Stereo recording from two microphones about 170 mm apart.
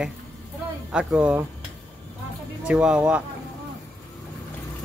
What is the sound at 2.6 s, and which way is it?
Speech, 5° right (ahead or behind).